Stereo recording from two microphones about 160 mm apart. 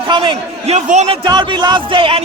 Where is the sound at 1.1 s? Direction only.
30° right (ahead or behind).